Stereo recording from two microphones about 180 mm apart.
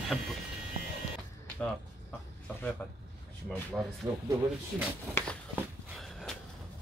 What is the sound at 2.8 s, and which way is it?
Speech, 10° left (ahead or behind).